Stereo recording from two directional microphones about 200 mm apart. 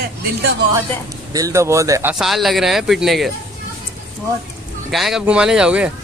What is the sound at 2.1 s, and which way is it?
Speech, centre (ahead or behind).